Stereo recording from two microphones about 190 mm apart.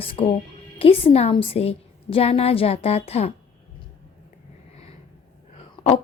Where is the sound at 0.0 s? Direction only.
30° left (ahead or behind).